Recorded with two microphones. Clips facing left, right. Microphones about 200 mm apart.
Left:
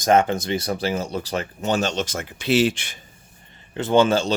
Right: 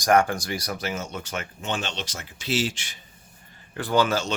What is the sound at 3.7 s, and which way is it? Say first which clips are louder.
Speech: left 5 dB; 20° left (ahead or behind).